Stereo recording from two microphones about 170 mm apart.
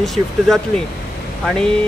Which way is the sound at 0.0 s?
Centre (ahead or behind).